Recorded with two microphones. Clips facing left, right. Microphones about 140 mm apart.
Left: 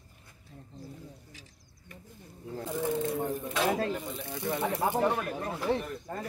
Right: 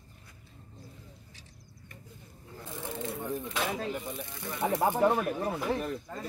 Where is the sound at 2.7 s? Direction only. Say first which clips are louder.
Left 7 dB; 55° left (ahead or behind).